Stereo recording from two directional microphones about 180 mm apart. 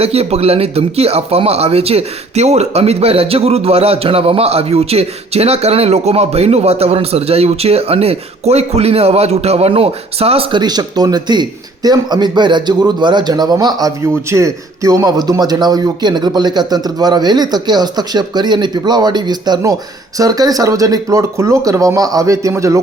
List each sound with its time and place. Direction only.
0.0 s speech: 35° right (ahead or behind); by 22.8 s 15° right (ahead or behind)